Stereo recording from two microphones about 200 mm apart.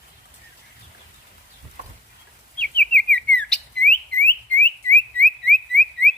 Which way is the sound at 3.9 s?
10° left (ahead or behind).